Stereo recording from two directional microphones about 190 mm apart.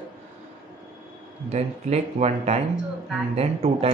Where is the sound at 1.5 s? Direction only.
35° right (ahead or behind).